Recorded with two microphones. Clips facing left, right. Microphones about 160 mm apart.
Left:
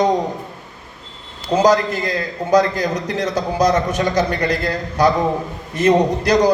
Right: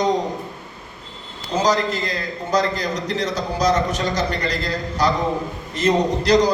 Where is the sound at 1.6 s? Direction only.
55° left (ahead or behind).